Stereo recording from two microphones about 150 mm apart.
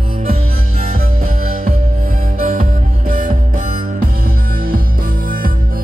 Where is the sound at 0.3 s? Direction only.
70° right (ahead or behind).